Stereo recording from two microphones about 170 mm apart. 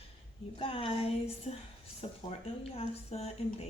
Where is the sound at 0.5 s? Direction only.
30° left (ahead or behind).